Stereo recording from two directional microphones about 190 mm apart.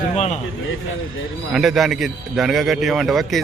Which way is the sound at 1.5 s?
Centre (ahead or behind).